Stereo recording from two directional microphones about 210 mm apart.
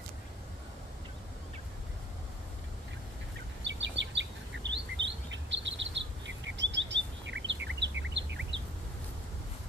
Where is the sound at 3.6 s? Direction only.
60° right (ahead or behind).